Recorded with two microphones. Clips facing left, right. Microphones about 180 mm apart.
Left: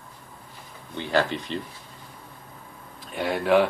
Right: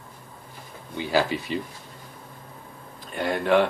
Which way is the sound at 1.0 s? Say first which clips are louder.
Right 1 dB; 5° right (ahead or behind).